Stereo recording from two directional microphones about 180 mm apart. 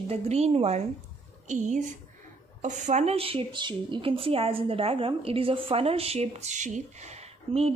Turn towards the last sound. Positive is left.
turn(degrees=-35)  # may be behind; listen again after turning